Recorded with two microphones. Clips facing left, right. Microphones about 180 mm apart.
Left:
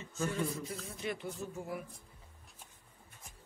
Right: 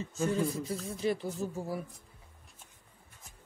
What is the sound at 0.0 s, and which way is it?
Speech, 35° right (ahead or behind).